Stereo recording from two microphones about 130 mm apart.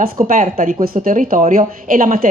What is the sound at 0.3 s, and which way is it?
A woman's voice, 90° right.